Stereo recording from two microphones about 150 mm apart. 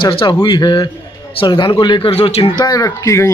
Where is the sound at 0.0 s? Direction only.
35° left (ahead or behind).